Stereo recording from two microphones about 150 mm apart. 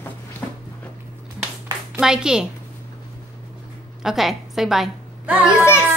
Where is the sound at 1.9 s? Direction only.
5° right (ahead or behind).